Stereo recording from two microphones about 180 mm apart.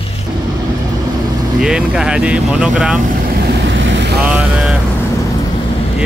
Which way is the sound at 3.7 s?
90° right.